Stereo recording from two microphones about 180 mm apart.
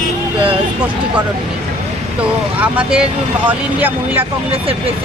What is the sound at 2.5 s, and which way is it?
Speech, 5° right (ahead or behind).